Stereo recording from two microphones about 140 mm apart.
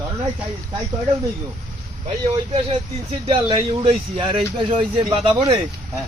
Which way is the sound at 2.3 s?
40° right (ahead or behind).